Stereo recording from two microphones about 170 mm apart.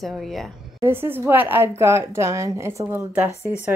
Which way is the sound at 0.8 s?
15° right (ahead or behind).